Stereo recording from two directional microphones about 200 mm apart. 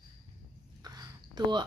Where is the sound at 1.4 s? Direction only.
20° right (ahead or behind).